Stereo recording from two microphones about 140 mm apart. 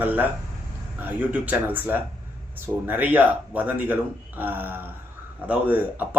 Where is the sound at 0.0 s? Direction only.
15° right (ahead or behind).